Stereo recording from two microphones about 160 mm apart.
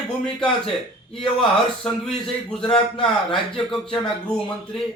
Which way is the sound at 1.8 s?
5° left (ahead or behind).